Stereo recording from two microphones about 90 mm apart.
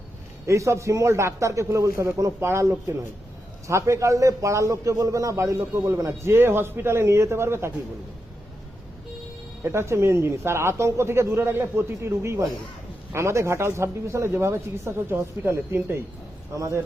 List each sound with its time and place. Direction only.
0.4 s a man's voice: 35° right (ahead or behind)
9.6 s a man's voice: 30° right (ahead or behind)